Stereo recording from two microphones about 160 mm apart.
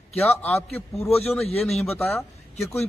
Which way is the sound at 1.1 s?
40° left (ahead or behind).